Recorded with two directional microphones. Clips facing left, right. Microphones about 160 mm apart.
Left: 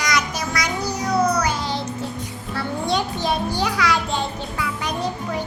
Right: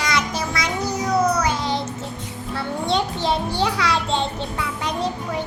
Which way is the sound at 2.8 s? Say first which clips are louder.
Right 1 dB; 25° right (ahead or behind).